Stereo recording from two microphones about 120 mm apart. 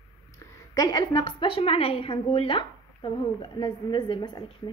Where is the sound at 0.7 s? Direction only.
30° left (ahead or behind).